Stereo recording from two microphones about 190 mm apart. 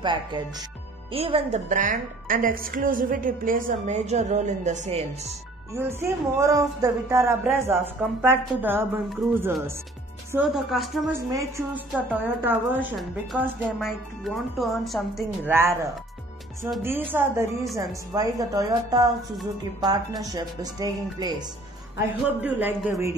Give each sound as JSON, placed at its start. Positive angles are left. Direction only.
{"t": 0.0, "sound": "a woman's voice", "side_deg": -25}
{"t": 5.7, "sound": "speech", "side_deg": -15}
{"t": 10.3, "sound": "speech", "side_deg": 0}
{"t": 11.1, "sound": "speech", "side_deg": -15}
{"t": 15.4, "sound": "speech", "side_deg": -15}
{"t": 21.9, "sound": "speech", "side_deg": -10}